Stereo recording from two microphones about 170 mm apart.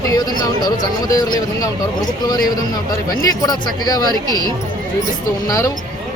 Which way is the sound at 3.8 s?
20° left (ahead or behind).